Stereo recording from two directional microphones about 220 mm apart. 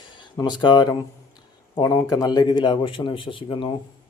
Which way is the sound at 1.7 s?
20° left (ahead or behind).